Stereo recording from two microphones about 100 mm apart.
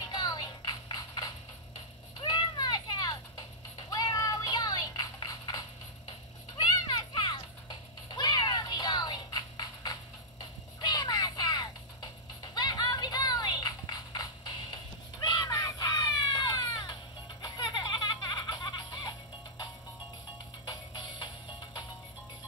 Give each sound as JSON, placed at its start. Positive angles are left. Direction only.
{"t": 0.1, "sound": "music", "side_deg": 45}
{"t": 6.0, "sound": "children playing", "side_deg": 50}
{"t": 8.1, "sound": "music", "side_deg": 45}
{"t": 17.4, "sound": "baby laughter", "side_deg": 50}
{"t": 20.6, "sound": "music", "side_deg": 50}